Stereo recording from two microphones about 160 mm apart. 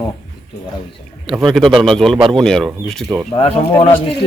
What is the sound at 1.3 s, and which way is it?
Speech, centre (ahead or behind).